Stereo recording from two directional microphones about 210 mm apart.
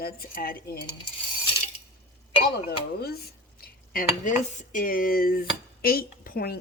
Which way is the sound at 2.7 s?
50° left (ahead or behind).